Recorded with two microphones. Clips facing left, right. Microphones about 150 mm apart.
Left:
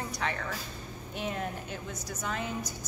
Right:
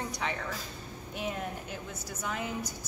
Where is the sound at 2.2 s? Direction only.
10° right (ahead or behind).